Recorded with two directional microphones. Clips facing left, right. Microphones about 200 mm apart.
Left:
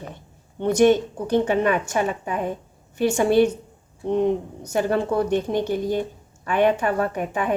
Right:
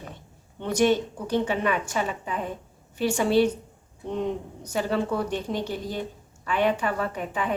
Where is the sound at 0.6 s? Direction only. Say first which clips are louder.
Left 5 dB; 50° left (ahead or behind).